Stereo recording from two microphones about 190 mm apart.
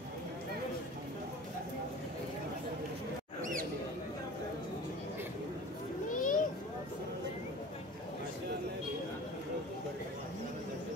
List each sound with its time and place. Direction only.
6.0 s children playing: 45° left (ahead or behind)